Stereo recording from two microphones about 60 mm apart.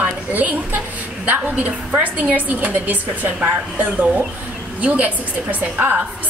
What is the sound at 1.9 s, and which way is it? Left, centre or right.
A woman's voice, right.